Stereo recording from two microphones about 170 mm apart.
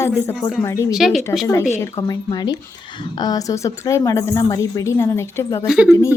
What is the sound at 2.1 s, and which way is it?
A woman's voice, 25° left (ahead or behind).